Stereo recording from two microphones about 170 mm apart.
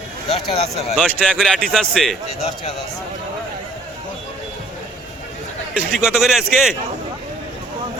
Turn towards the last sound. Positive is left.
turn(degrees=-5)  # may be behind; listen again after turning